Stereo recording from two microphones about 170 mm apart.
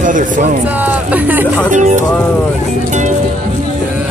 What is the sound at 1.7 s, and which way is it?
Speech, 45° right (ahead or behind).